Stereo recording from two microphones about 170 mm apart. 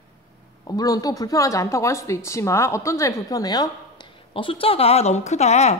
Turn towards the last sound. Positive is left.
turn(degrees=40)  # may be behind; listen again after turning